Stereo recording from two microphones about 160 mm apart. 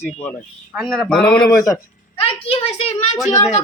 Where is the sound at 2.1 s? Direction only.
35° left (ahead or behind).